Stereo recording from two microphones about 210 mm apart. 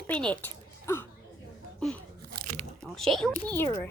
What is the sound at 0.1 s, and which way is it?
Speech, 5° left (ahead or behind).